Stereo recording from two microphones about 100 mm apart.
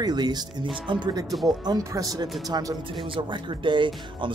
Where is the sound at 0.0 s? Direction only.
45° right (ahead or behind).